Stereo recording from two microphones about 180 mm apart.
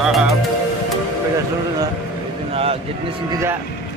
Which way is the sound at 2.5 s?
35° right (ahead or behind).